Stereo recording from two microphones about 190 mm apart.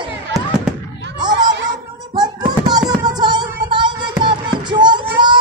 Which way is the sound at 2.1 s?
20° right (ahead or behind).